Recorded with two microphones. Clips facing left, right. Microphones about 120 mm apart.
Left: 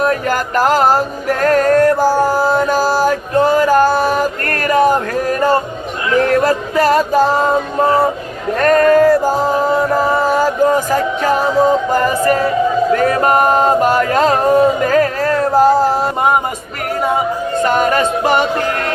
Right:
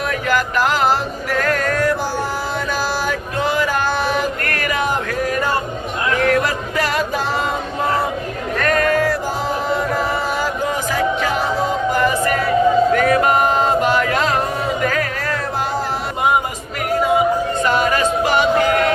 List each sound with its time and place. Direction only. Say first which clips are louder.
0.0 s music: left 4 dB; 40° left (ahead or behind)
12.9 s chant: left 2 dB; 35° left (ahead or behind)
17.7 s music: left 3 dB; 45° left (ahead or behind)